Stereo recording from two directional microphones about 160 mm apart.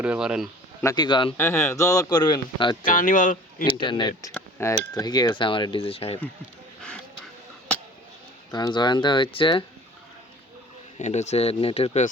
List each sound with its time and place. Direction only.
0.0 s a man's voice: 5° right (ahead or behind)
0.8 s speech: 25° left (ahead or behind)
1.4 s speech: 15° left (ahead or behind)
2.8 s speech: 60° left (ahead or behind)
3.7 s speech: 30° left (ahead or behind)
4.3 s cutlery: 5° left (ahead or behind)
5.0 s speech: 25° left (ahead or behind)
8.5 s speech: 25° left (ahead or behind)
10.9 s speech: 45° left (ahead or behind)